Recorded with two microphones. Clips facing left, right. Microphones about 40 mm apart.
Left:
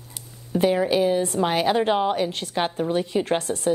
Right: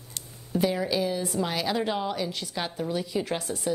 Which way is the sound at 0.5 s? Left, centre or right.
Left.